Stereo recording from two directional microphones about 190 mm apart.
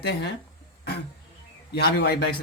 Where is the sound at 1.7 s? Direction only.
55° left (ahead or behind).